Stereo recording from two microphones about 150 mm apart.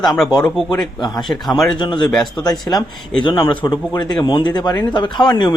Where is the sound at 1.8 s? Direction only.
30° left (ahead or behind).